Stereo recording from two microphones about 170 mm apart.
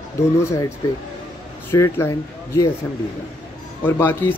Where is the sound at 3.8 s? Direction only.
10° left (ahead or behind).